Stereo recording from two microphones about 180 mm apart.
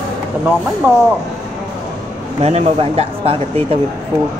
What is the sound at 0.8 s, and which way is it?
Speech, 15° right (ahead or behind).